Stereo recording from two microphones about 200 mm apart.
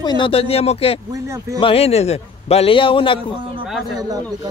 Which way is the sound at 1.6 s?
30° left (ahead or behind).